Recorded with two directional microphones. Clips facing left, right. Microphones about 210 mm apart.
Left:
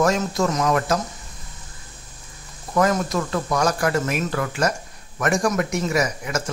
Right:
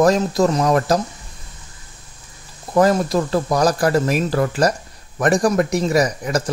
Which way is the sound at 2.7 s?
35° right (ahead or behind).